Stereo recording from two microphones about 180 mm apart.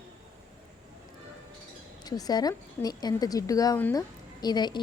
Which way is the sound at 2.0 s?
20° left (ahead or behind).